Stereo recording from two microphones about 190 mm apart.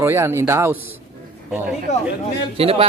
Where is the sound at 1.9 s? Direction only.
35° left (ahead or behind).